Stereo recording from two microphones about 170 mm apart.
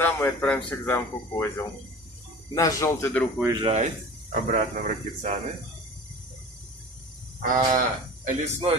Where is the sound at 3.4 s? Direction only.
20° right (ahead or behind).